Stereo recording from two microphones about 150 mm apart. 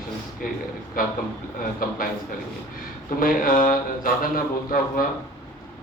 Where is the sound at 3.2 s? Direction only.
70° left (ahead or behind).